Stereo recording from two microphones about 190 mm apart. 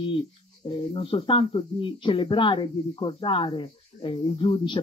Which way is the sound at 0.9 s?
30° left (ahead or behind).